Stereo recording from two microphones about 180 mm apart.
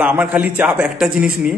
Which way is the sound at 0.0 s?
10° right (ahead or behind).